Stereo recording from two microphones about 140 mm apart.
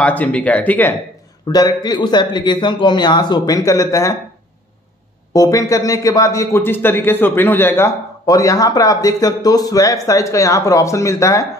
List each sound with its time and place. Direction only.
0.0 s speech: 10° left (ahead or behind)
1.5 s a man's voice: 30° left (ahead or behind)
5.3 s a man's voice: 25° left (ahead or behind)